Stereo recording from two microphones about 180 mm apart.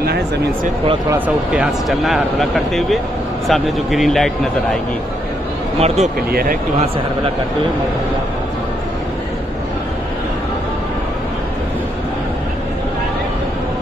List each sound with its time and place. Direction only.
1.1 s speech: 10° right (ahead or behind)
5.8 s speech: 35° right (ahead or behind)
6.3 s a man's voice: 55° right (ahead or behind)